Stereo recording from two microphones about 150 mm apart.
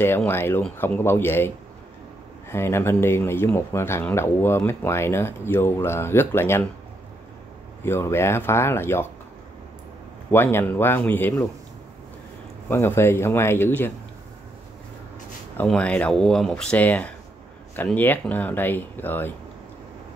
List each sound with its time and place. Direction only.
0.3 s speech: 15° left (ahead or behind)
2.5 s speech: 15° left (ahead or behind)
7.8 s speech: 15° left (ahead or behind)
10.3 s speech: 15° left (ahead or behind)
12.6 s speech: 15° left (ahead or behind)
15.5 s speech: 5° left (ahead or behind)